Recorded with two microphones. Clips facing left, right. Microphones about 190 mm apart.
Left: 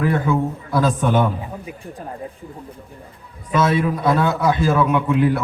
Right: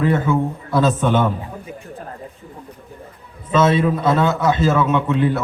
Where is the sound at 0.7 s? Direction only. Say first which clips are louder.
Right 2 dB; 25° right (ahead or behind).